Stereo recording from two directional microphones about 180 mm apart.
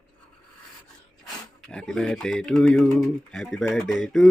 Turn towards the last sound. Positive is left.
turn(degrees=0)  # may be behind; listen again after turning